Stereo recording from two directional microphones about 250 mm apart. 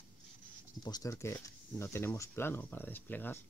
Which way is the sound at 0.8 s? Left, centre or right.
Centre.